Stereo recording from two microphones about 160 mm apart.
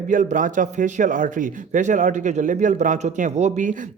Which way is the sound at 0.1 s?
55° right (ahead or behind).